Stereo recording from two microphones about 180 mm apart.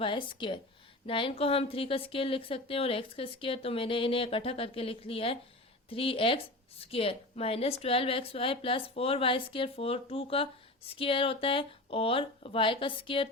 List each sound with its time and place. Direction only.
0.0 s a woman's voice: 25° left (ahead or behind)